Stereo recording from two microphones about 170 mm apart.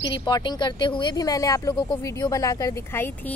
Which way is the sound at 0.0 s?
25° left (ahead or behind).